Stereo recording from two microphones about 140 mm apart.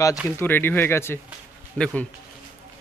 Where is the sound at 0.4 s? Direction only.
15° left (ahead or behind).